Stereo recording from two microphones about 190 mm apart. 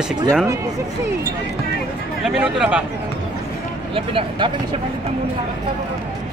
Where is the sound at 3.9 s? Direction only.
30° right (ahead or behind).